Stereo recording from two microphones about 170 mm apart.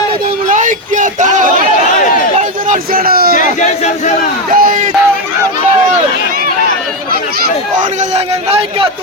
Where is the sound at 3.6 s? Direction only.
45° left (ahead or behind).